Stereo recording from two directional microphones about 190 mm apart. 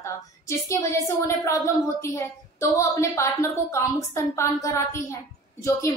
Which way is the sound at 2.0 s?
15° left (ahead or behind).